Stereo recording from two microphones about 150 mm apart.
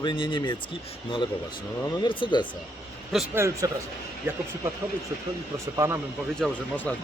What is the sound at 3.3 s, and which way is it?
Speech, 20° right (ahead or behind).